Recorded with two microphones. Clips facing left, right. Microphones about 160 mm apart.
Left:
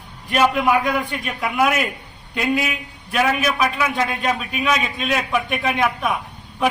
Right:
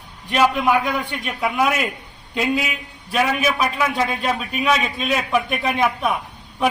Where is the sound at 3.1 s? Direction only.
Centre (ahead or behind).